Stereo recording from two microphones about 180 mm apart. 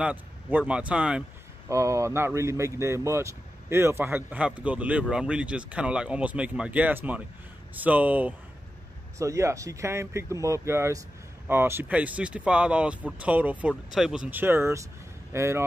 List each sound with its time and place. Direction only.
0.0 s speech: 10° right (ahead or behind)
1.7 s speech: 15° right (ahead or behind)